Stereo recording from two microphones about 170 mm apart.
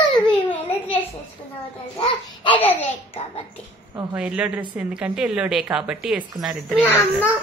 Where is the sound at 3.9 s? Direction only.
5° right (ahead or behind).